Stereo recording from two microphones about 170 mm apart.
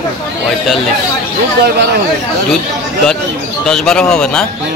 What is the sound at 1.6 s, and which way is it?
Speech, 70° right (ahead or behind).